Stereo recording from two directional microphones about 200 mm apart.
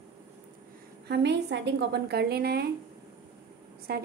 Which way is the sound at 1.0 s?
60° right (ahead or behind).